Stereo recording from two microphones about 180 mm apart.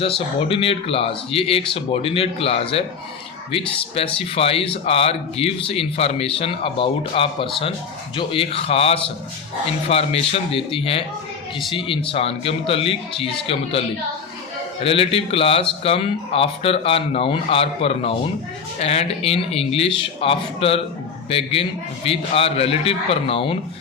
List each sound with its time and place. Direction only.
0.0 s speech: 30° left (ahead or behind)